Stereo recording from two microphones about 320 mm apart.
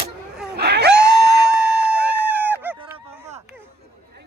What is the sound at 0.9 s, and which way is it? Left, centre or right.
Music, right.